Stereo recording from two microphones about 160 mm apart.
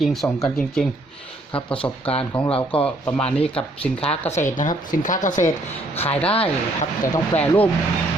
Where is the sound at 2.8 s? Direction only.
10° left (ahead or behind).